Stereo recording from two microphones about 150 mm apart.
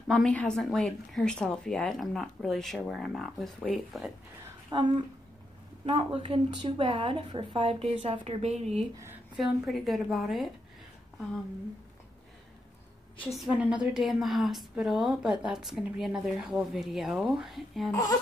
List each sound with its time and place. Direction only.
0.1 s a woman's voice: 5° left (ahead or behind)
4.6 s speech: 30° right (ahead or behind)
7.9 s speech: 50° right (ahead or behind)
9.4 s a woman's voice: centre (ahead or behind)
13.3 s a woman's voice: 5° right (ahead or behind)